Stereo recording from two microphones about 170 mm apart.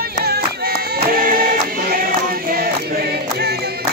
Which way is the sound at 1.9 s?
60° right (ahead or behind).